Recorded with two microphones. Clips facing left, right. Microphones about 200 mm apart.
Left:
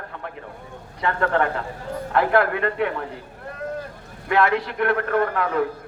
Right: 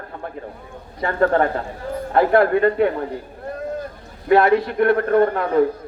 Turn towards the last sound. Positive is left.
turn(degrees=-35)  # may be behind; listen again after turning